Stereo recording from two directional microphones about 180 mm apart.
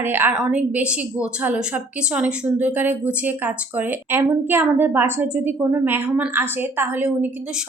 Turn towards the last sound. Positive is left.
turn(degrees=-10)  # may be behind; listen again after turning